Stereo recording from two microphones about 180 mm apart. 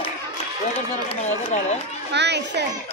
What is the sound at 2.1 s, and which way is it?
Speech, 70° right (ahead or behind).